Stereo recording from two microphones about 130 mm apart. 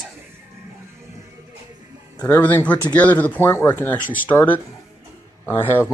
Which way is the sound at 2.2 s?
15° left (ahead or behind).